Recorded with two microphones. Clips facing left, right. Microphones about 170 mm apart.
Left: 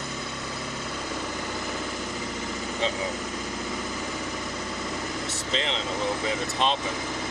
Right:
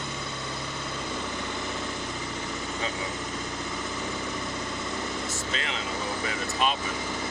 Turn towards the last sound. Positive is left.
turn(degrees=25)  # may be behind; listen again after turning